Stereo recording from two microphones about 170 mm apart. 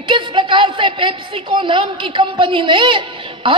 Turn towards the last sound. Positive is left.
turn(degrees=-30)  # may be behind; listen again after turning